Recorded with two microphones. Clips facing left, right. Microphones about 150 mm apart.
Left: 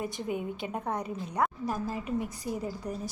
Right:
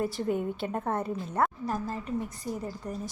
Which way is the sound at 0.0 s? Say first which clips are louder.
Right 4 dB; 10° left (ahead or behind).